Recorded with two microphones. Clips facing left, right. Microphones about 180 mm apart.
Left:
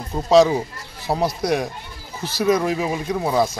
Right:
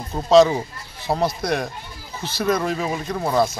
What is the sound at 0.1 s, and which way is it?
Speech, 10° left (ahead or behind).